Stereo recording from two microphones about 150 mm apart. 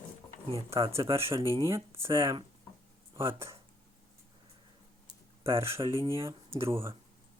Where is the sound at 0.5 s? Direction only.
40° right (ahead or behind).